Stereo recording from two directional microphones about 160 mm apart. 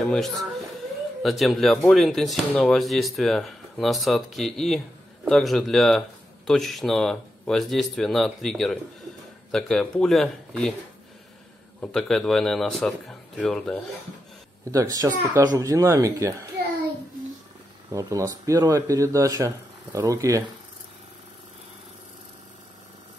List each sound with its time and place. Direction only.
0.0 s speech: centre (ahead or behind)
11.8 s speech: 5° left (ahead or behind)
14.6 s speech: 20° right (ahead or behind)
17.9 s speech: 20° right (ahead or behind)